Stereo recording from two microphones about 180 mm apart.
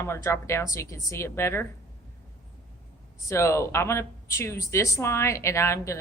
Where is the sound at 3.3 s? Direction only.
15° left (ahead or behind).